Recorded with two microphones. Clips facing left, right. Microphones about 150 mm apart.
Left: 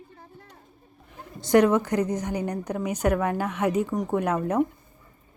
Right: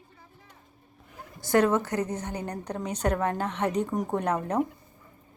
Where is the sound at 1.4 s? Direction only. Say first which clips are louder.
Left 4 dB; 20° left (ahead or behind).